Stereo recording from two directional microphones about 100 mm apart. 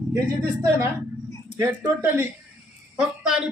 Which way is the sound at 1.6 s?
25° right (ahead or behind).